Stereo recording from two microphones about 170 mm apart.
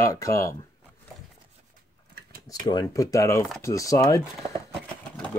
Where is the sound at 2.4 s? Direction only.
20° left (ahead or behind).